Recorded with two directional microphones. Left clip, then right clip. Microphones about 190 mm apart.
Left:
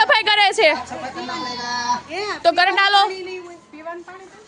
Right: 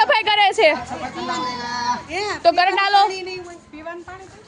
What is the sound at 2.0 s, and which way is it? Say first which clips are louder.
Speech: right 1 dB; 45° right (ahead or behind).